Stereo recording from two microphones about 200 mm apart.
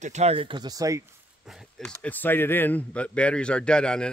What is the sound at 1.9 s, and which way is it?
A man's voice, 10° left (ahead or behind).